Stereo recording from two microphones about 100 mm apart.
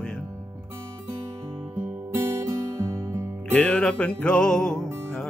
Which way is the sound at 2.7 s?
30° right (ahead or behind).